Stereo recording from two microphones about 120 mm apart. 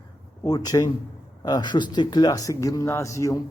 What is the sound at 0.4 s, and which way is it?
Speech, 30° left (ahead or behind).